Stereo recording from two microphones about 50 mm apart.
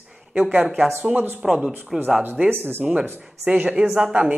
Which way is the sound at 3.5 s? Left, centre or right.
Right.